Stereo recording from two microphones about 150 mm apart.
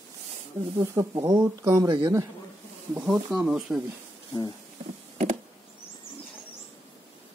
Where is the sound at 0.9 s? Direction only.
25° right (ahead or behind).